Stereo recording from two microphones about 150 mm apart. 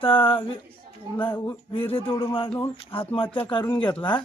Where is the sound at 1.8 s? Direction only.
40° left (ahead or behind).